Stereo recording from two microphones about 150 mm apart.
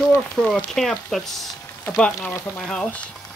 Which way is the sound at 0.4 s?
5° left (ahead or behind).